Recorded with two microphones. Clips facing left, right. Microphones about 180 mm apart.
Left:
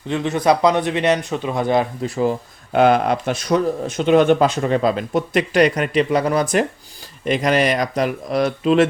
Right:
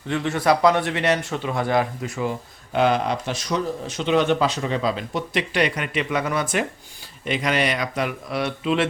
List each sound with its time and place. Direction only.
0.1 s speech: 20° left (ahead or behind); by 2.3 s 35° left (ahead or behind)
2.7 s speech: 55° left (ahead or behind)